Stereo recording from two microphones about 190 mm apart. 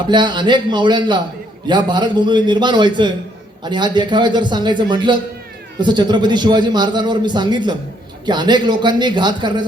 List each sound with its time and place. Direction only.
0.1 s a man's voice: 25° right (ahead or behind)